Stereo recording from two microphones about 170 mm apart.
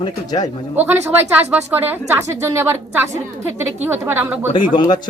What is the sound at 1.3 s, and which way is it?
Speech, 10° right (ahead or behind).